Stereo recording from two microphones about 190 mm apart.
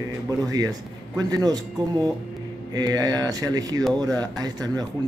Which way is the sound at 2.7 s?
20° right (ahead or behind).